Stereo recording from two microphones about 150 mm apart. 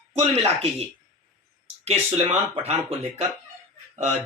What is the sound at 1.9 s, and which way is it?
Speech, 45° right (ahead or behind).